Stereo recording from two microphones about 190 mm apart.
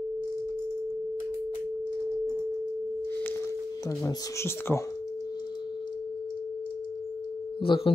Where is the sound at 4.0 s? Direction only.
15° left (ahead or behind).